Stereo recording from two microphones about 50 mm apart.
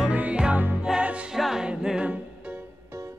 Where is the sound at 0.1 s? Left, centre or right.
Right.